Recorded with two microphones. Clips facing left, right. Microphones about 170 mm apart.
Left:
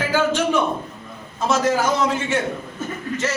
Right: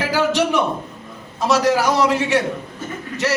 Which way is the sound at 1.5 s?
70° right (ahead or behind).